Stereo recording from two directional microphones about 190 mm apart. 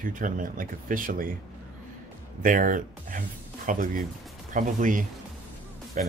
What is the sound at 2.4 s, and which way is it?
Speech, 45° right (ahead or behind).